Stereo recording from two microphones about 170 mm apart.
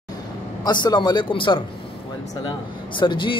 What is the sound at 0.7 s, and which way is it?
Speech, 25° left (ahead or behind).